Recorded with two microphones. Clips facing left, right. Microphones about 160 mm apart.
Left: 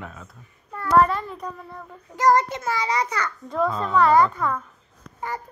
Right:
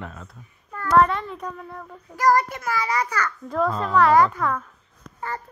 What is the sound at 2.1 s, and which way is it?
Child singing, 20° left (ahead or behind).